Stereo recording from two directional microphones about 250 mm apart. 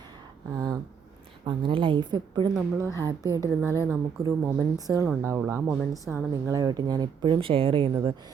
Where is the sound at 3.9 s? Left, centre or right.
Centre.